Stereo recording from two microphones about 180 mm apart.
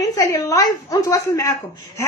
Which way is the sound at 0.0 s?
20° left (ahead or behind).